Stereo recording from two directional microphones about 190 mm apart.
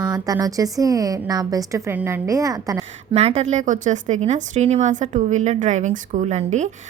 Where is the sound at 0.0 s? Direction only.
20° right (ahead or behind).